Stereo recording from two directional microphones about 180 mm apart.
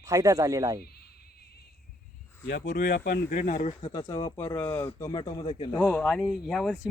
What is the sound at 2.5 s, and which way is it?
Speech, 70° left (ahead or behind).